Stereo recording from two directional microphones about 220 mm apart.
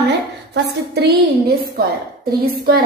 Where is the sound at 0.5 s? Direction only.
50° right (ahead or behind).